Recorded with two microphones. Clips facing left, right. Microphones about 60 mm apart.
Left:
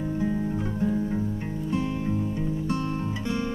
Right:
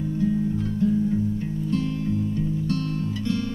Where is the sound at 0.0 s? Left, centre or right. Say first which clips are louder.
Right 3 dB; left.